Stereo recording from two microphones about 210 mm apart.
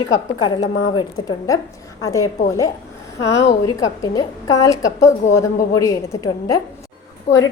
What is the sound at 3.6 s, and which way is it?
A woman's voice, 15° left (ahead or behind).